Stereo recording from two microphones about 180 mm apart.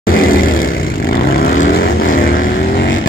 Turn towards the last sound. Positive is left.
turn(degrees=60)  # may be behind; listen again after turning